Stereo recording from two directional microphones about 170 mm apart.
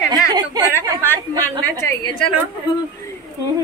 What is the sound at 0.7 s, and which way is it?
Speech, 15° left (ahead or behind).